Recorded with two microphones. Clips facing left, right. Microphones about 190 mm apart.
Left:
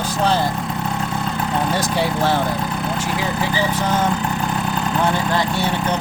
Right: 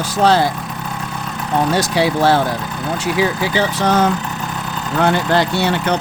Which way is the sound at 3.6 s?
80° right.